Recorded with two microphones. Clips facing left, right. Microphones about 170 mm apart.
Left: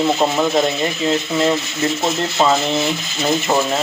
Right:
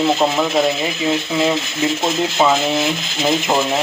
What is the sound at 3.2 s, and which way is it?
Speech, 15° right (ahead or behind).